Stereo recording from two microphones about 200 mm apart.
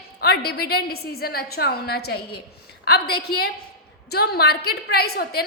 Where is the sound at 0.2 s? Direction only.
50° left (ahead or behind).